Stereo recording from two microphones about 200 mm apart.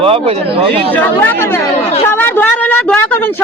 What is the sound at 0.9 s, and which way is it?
Speech, 10° left (ahead or behind).